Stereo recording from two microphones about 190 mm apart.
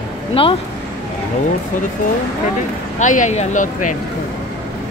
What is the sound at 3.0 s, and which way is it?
Speech, 40° left (ahead or behind).